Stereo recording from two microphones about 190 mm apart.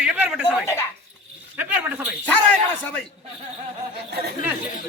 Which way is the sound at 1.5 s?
10° right (ahead or behind).